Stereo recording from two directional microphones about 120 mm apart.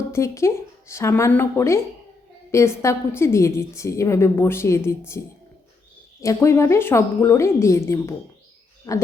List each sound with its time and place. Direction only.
0.1 s a woman's voice: 25° left (ahead or behind)